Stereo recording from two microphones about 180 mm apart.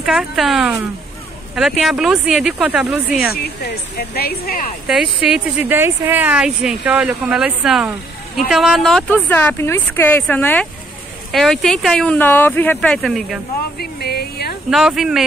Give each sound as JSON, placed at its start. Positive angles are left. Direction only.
{"t": 0.0, "sound": "speech", "side_deg": 0}
{"t": 3.4, "sound": "speech", "side_deg": 60}
{"t": 4.8, "sound": "speech", "side_deg": -5}
{"t": 13.7, "sound": "a sound", "side_deg": 60}
{"t": 14.7, "sound": "speech", "side_deg": 0}